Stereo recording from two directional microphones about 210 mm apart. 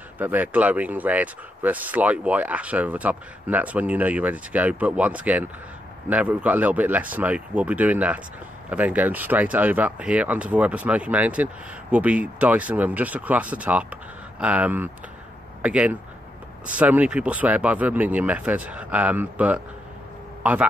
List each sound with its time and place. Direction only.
0.2 s speech: 10° right (ahead or behind)